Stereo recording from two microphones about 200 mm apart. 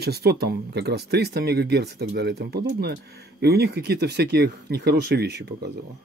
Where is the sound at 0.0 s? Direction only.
55° right (ahead or behind).